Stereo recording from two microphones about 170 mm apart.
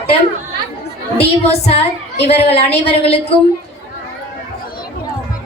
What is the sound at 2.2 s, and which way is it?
A woman's voice, 40° left (ahead or behind).